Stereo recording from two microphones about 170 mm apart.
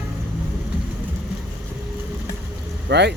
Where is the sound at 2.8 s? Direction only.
80° right.